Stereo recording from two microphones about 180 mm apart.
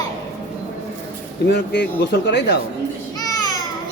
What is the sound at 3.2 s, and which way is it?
Babbling, 20° left (ahead or behind).